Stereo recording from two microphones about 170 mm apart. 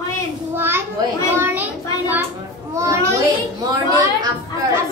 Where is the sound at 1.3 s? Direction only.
10° right (ahead or behind).